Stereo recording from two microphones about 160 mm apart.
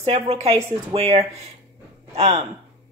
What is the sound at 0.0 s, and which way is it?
A woman's voice, 40° right (ahead or behind).